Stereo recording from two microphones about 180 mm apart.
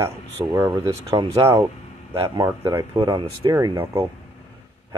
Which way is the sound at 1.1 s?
25° right (ahead or behind).